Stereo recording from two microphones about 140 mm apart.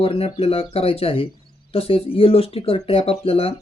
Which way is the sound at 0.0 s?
45° left (ahead or behind).